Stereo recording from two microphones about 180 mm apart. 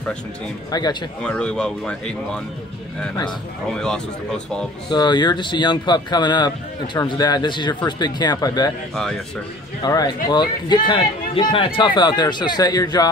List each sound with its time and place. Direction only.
0.7 s speech: 20° left (ahead or behind)
1.2 s speech: 5° left (ahead or behind)
3.7 s speech: 5° left (ahead or behind)
4.8 s speech: 25° left (ahead or behind)
9.8 s speech: 20° left (ahead or behind)